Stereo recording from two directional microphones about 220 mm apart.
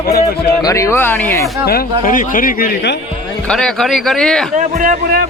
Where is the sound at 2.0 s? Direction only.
35° left (ahead or behind).